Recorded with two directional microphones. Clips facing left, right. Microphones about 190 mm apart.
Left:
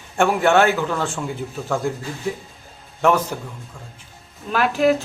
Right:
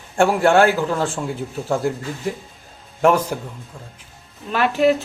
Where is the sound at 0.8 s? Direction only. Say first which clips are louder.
Right 2 dB; 35° right (ahead or behind).